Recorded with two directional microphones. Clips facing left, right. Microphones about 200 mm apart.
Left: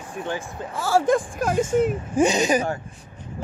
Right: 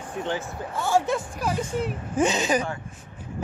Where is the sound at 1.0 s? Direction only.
50° left (ahead or behind).